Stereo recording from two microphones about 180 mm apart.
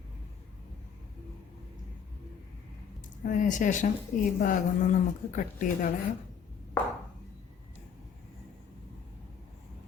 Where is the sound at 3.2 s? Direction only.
45° left (ahead or behind).